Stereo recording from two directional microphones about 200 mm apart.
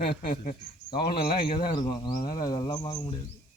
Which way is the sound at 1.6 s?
20° left (ahead or behind).